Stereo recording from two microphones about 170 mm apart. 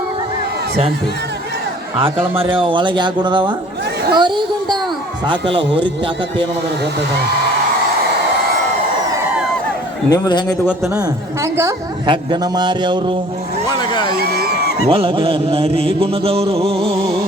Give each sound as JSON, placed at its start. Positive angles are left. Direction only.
{"t": 2.4, "sound": "a man's voice", "side_deg": -30}
{"t": 4.1, "sound": "chatter", "side_deg": -25}
{"t": 5.5, "sound": "a man's voice", "side_deg": -30}
{"t": 10.1, "sound": "speech", "side_deg": 25}
{"t": 10.9, "sound": "a woman's voice", "side_deg": -20}
{"t": 13.7, "sound": "speech", "side_deg": 25}
{"t": 14.5, "sound": "a sound", "side_deg": 65}
{"t": 14.8, "sound": "mantra", "side_deg": -30}